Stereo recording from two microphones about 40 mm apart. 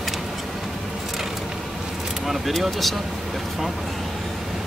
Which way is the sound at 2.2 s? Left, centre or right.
Centre.